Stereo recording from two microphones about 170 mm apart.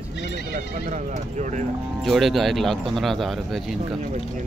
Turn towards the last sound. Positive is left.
turn(degrees=0)  # may be behind; listen again after turning